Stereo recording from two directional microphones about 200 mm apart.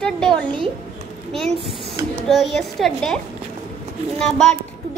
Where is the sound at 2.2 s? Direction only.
Centre (ahead or behind).